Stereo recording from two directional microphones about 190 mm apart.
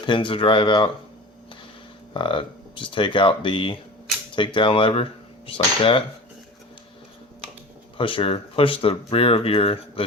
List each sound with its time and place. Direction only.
0.0 s speech: 25° left (ahead or behind)
2.1 s speech: 25° left (ahead or behind)
7.9 s speech: 25° left (ahead or behind)